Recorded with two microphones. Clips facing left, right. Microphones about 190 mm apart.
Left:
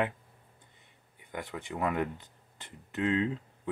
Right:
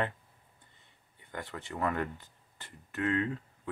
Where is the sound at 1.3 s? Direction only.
15° left (ahead or behind).